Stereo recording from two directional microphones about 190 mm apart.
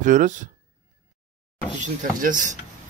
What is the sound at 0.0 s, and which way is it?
Speech, 45° right (ahead or behind).